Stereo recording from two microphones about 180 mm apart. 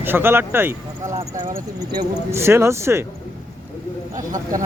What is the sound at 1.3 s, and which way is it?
Speech, 45° right (ahead or behind).